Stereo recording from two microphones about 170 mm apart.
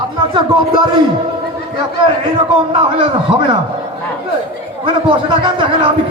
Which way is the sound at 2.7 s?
35° right (ahead or behind).